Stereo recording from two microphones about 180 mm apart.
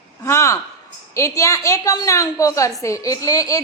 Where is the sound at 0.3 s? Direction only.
15° left (ahead or behind).